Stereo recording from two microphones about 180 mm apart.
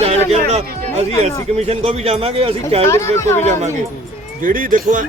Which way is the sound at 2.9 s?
15° left (ahead or behind).